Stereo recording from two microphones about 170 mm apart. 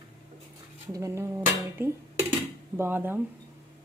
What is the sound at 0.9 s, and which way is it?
A woman's voice, 15° right (ahead or behind).